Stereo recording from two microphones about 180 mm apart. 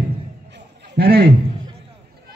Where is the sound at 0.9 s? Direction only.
65° right (ahead or behind).